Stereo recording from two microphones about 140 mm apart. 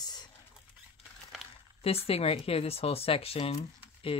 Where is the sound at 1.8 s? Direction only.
45° left (ahead or behind).